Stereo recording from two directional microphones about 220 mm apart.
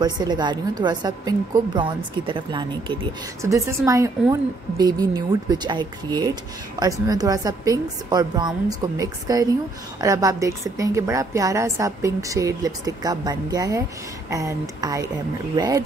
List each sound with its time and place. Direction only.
0.0 s a woman's voice: 20° right (ahead or behind)